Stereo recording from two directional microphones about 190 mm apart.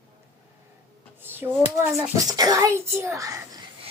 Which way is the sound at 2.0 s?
20° right (ahead or behind).